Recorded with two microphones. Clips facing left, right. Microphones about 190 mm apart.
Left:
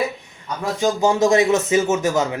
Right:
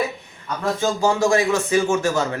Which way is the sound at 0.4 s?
15° left (ahead or behind).